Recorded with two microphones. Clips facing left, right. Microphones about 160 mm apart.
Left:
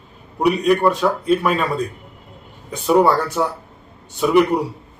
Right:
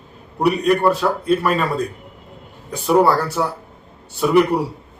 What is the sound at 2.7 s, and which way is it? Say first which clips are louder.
Speech: even; centre (ahead or behind).